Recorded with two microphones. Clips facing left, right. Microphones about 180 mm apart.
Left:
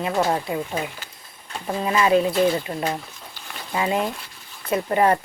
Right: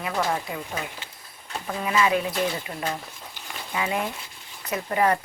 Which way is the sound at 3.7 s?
30° left (ahead or behind).